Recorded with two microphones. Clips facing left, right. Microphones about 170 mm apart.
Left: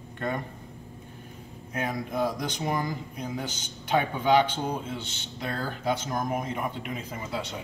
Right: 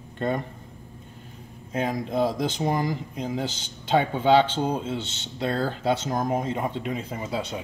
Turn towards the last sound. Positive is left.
turn(degrees=-25)  # may be behind; listen again after turning